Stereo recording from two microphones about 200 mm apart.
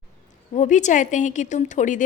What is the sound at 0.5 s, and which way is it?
A woman's voice, 35° left (ahead or behind).